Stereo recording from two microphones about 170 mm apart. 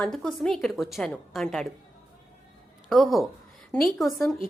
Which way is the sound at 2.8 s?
Centre (ahead or behind).